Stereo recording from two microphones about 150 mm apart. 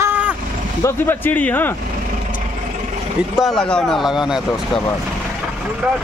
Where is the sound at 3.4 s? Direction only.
Centre (ahead or behind).